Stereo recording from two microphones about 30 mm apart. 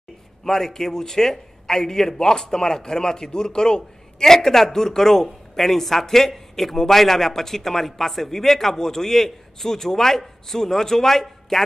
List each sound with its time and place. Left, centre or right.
0.5 s a man's voice: centre